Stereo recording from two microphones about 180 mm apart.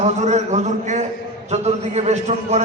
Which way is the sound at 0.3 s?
40° right (ahead or behind).